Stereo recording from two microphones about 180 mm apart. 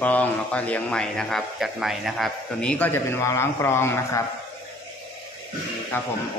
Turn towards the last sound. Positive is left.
turn(degrees=10)  # may be behind; listen again after turning